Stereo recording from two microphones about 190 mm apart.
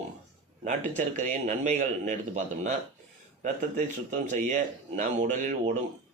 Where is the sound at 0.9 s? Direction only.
40° right (ahead or behind).